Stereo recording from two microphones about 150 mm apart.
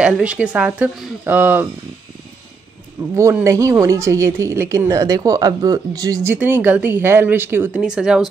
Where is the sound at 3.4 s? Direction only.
20° right (ahead or behind).